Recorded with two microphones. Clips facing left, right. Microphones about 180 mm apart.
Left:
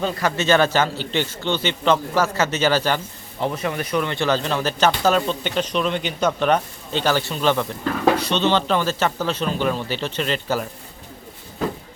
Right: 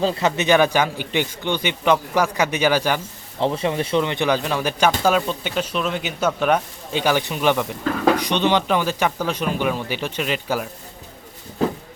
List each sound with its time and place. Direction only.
0.0 s a man's voice: 20° right (ahead or behind)
3.4 s a man's voice: 30° right (ahead or behind); by 10.7 s 10° right (ahead or behind)